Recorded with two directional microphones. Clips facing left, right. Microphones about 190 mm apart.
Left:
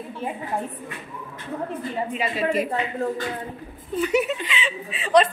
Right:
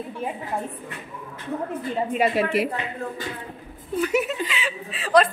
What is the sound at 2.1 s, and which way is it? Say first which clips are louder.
Speech: right 3 dB; 65° right (ahead or behind).